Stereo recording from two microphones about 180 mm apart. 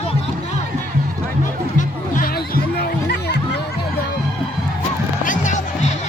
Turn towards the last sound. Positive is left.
turn(degrees=45)  # may be behind; listen again after turning